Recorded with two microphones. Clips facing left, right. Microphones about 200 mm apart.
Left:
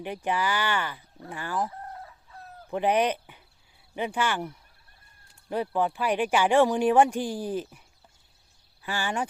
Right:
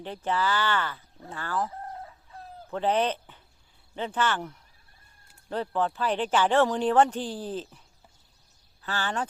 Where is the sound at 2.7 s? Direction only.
15° left (ahead or behind).